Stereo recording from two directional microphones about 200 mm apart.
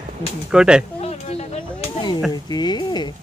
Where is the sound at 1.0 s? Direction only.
30° left (ahead or behind).